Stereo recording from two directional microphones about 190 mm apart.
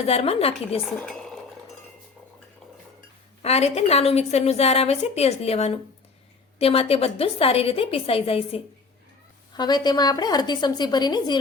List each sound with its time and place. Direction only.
0.1 s a woman's voice: 30° left (ahead or behind)
1.0 s dishes: centre (ahead or behind)
3.4 s a woman's voice: 35° left (ahead or behind)